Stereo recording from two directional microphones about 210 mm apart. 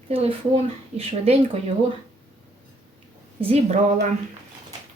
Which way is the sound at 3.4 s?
30° right (ahead or behind).